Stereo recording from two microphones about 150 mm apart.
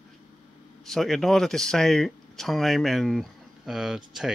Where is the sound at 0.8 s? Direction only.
Centre (ahead or behind).